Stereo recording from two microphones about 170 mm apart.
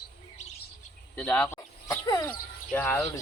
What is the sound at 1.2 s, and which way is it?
Speech, 5° left (ahead or behind).